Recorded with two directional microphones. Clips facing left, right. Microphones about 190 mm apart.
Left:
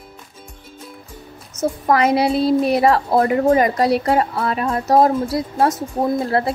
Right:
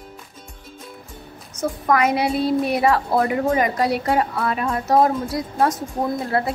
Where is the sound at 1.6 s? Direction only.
30° left (ahead or behind).